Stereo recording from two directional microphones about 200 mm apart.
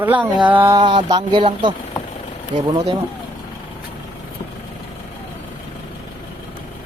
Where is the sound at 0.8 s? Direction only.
25° right (ahead or behind).